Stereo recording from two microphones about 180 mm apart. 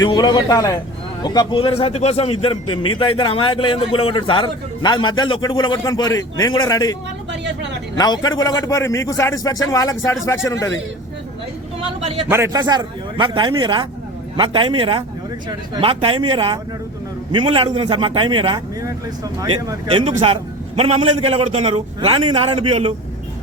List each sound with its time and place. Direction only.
0.0 s a man's voice: 25° left (ahead or behind)
7.9 s a man's voice: 20° left (ahead or behind)
12.3 s a man's voice: 20° right (ahead or behind)